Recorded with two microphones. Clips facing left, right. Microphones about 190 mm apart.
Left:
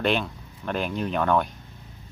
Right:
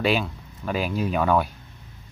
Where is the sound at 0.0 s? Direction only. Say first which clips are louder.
Right 1 dB; 5° right (ahead or behind).